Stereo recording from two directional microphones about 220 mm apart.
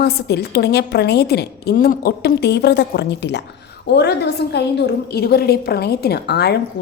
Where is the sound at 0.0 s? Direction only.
45° left (ahead or behind).